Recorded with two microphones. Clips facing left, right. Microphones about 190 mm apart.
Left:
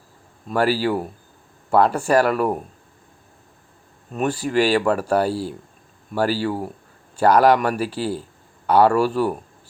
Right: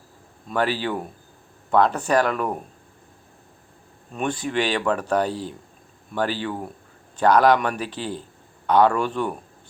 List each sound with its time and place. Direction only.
0.4 s speech: 5° left (ahead or behind)
4.1 s speech: 5° left (ahead or behind)